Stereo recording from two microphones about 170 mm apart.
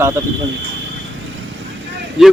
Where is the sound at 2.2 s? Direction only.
5° right (ahead or behind).